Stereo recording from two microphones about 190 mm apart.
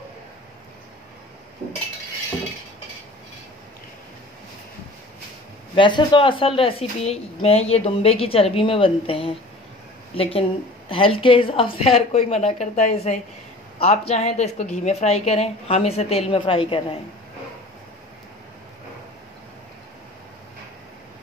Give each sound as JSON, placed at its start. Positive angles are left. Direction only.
{"t": 5.8, "sound": "a woman's voice", "side_deg": 25}